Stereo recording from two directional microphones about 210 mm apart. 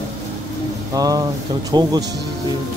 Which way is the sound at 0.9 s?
15° right (ahead or behind).